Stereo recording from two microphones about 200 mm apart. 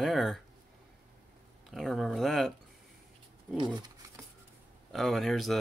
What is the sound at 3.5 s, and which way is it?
Speech, 20° right (ahead or behind).